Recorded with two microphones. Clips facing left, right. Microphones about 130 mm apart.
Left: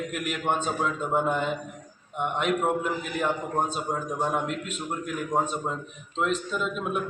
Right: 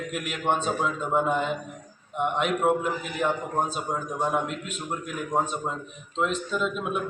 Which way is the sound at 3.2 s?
Centre (ahead or behind).